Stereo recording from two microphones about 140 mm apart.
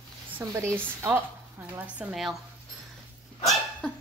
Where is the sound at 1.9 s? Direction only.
Centre (ahead or behind).